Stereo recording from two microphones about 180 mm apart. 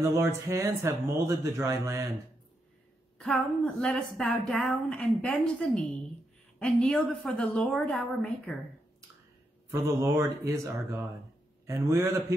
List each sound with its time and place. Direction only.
0.0 s speech: 15° right (ahead or behind)
3.2 s speech: 5° left (ahead or behind)
9.7 s speech: 15° right (ahead or behind)